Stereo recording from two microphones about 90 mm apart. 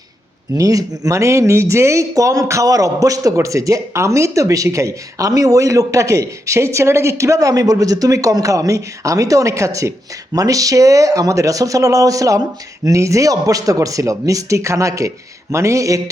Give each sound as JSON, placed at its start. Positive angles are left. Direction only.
{"t": 0.5, "sound": "a man's voice", "side_deg": -40}